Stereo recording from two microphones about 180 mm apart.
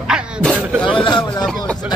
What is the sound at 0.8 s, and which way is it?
Speech, 25° left (ahead or behind).